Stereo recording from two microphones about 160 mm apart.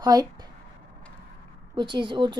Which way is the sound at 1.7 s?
30° right (ahead or behind).